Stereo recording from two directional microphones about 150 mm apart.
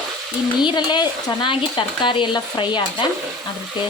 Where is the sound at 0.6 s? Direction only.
30° left (ahead or behind).